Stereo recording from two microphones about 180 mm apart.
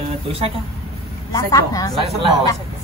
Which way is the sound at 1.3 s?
20° left (ahead or behind).